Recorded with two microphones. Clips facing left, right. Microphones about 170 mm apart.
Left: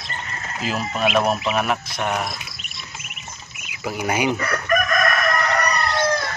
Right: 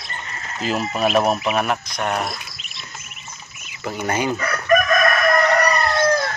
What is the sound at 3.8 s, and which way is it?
Speech, 10° left (ahead or behind).